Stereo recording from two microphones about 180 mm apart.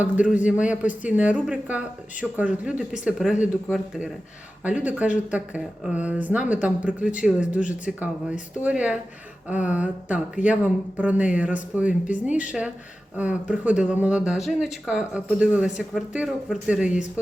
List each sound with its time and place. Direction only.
0.0 s speech: 10° right (ahead or behind)